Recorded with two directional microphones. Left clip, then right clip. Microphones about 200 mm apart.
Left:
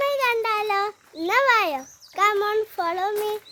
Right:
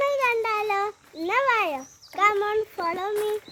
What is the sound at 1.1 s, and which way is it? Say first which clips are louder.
A child's voice: left 3 dB; 20° left (ahead or behind).